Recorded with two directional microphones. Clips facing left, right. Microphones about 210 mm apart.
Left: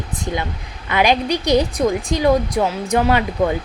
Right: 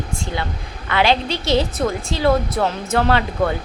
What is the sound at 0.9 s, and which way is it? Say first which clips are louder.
A woman's voice: left 1 dB; 15° left (ahead or behind).